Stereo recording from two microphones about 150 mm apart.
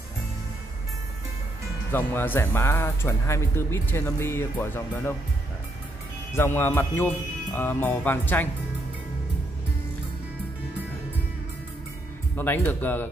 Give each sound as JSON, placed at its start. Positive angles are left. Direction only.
{"t": 1.9, "sound": "speech", "side_deg": 15}
{"t": 6.3, "sound": "speech", "side_deg": 15}
{"t": 12.4, "sound": "speech", "side_deg": 15}